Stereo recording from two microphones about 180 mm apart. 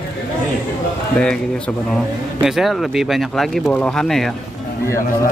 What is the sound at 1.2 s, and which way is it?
Speech, 5° left (ahead or behind).